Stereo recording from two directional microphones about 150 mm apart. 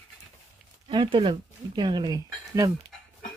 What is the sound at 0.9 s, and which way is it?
Speech, 35° right (ahead or behind).